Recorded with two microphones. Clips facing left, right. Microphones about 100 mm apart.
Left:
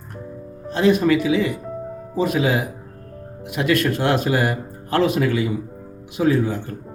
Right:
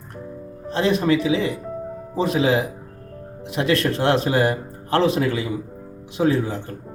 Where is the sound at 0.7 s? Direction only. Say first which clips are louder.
Left 3 dB; 30° right (ahead or behind).